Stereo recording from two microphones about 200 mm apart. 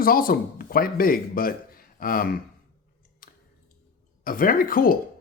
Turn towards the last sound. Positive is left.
turn(degrees=45)  # may be behind; listen again after turning